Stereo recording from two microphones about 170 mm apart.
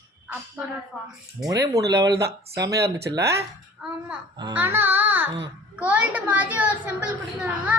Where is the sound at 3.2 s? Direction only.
75° right (ahead or behind).